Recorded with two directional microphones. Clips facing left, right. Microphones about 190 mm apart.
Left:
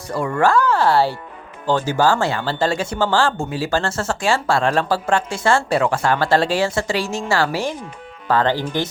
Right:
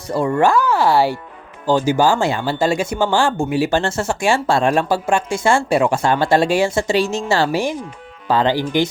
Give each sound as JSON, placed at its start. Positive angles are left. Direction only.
{"t": 0.1, "sound": "speech", "side_deg": -25}
{"t": 0.5, "sound": "speech", "side_deg": -10}